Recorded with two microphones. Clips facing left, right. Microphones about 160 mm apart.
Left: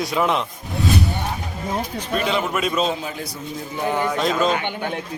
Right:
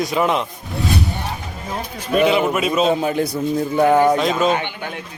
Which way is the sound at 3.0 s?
60° right (ahead or behind).